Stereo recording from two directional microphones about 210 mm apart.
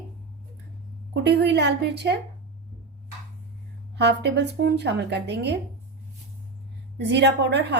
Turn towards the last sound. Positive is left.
turn(degrees=-55)  # may be behind; listen again after turning